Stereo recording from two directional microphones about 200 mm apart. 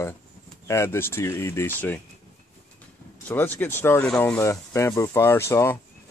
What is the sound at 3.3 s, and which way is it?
Speech, 10° left (ahead or behind).